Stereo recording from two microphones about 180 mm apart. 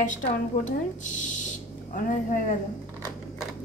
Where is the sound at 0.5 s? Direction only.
40° left (ahead or behind).